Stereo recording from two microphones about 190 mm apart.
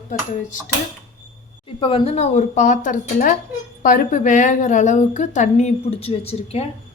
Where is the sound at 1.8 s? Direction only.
30° left (ahead or behind).